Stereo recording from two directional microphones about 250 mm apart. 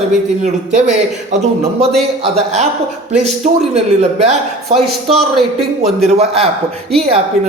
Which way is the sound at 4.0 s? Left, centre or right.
Right.